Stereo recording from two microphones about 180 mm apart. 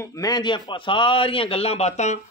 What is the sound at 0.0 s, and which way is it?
A man's voice, 20° left (ahead or behind).